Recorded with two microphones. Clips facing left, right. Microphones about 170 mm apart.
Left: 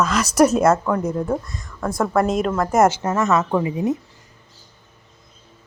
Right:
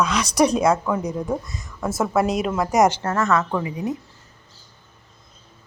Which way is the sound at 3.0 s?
15° left (ahead or behind).